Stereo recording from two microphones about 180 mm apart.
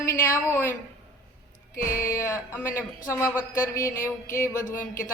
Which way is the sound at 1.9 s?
15° left (ahead or behind).